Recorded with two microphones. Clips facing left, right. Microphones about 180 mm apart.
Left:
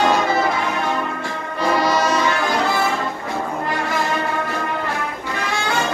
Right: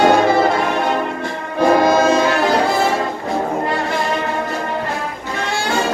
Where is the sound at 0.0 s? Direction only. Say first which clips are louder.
Right 5 dB; 55° right (ahead or behind).